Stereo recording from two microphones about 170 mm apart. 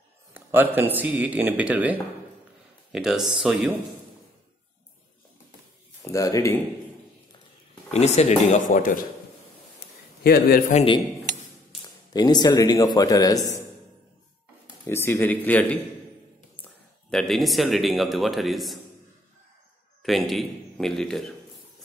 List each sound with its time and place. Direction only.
0.3 s speech: 10° right (ahead or behind)
6.1 s speech: 20° left (ahead or behind)
7.9 s speech: 40° left (ahead or behind)
8.6 s speech: 55° left (ahead or behind)
10.2 s a man's voice: 65° left (ahead or behind)
10.7 s speech: 35° left (ahead or behind)
11.8 s speech: 25° left (ahead or behind)
14.9 s speech: 15° left (ahead or behind)
20.0 s a man's voice: centre (ahead or behind)